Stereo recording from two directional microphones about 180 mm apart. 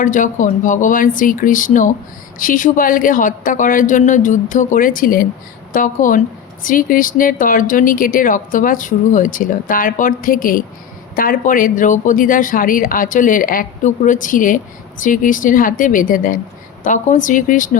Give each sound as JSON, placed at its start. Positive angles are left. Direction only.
{"t": 0.0, "sound": "speech", "side_deg": 45}